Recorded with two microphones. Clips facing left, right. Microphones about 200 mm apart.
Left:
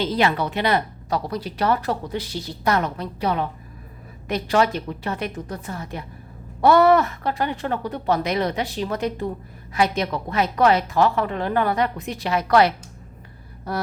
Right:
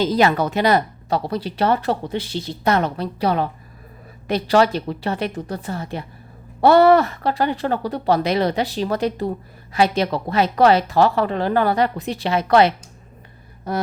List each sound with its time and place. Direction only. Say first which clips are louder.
0.0 s a woman's voice: right 4 dB; 40° right (ahead or behind)
1.1 s a woman's voice: right 3 dB; 30° right (ahead or behind)